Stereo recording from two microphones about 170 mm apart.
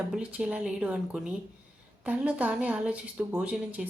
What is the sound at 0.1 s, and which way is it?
A woman's voice, 5° right (ahead or behind).